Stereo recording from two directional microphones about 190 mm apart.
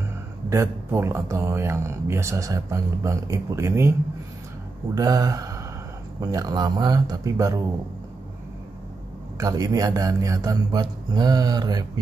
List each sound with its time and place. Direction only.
0.5 s speech: 15° right (ahead or behind)
4.9 s a man's voice: 20° right (ahead or behind)
9.4 s a man's voice: 20° right (ahead or behind)